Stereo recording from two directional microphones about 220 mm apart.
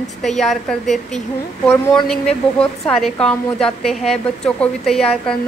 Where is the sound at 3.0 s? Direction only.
5° left (ahead or behind).